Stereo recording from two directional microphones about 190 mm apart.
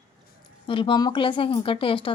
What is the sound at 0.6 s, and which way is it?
Speech, 25° left (ahead or behind).